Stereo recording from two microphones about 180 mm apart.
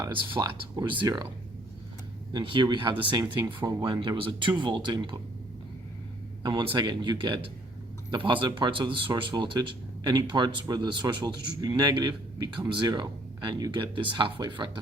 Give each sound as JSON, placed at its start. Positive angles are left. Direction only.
{"t": 0.0, "sound": "speech", "side_deg": -25}
{"t": 2.3, "sound": "speech", "side_deg": -25}
{"t": 6.4, "sound": "speech", "side_deg": -25}